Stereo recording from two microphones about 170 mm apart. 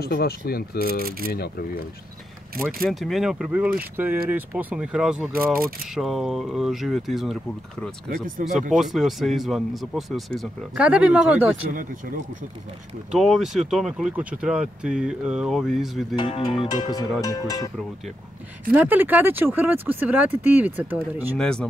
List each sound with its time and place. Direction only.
0.0 s speech: 65° left (ahead or behind)
2.9 s speech: centre (ahead or behind)
8.4 s speech: 55° right (ahead or behind)
8.7 s speech: centre (ahead or behind)
11.7 s speech: 55° right (ahead or behind)
13.1 s speech: centre (ahead or behind)
16.2 s speech: 30° left (ahead or behind)
18.7 s speech: 10° right (ahead or behind)
21.4 s speech: 5° left (ahead or behind)